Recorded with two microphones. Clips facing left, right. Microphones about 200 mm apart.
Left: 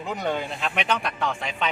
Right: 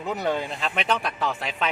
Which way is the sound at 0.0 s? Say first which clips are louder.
Right 1 dB; 5° right (ahead or behind).